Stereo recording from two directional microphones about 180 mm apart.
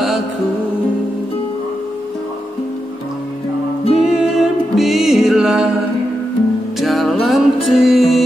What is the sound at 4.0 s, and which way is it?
Music, centre (ahead or behind).